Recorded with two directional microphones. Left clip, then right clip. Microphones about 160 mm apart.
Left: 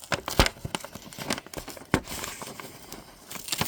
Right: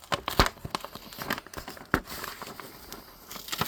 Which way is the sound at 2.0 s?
30° left (ahead or behind).